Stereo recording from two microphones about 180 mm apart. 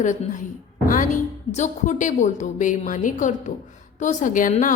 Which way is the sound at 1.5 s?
40° left (ahead or behind).